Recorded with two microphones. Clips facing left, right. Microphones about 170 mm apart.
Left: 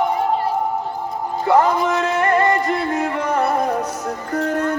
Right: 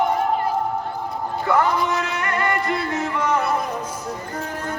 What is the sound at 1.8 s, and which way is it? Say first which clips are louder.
Music: left 5 dB; 45° left (ahead or behind).